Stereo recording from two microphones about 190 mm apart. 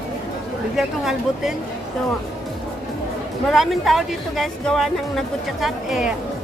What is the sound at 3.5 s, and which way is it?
Speech, centre (ahead or behind).